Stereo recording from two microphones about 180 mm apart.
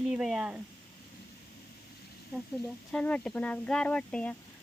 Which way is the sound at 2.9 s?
5° left (ahead or behind).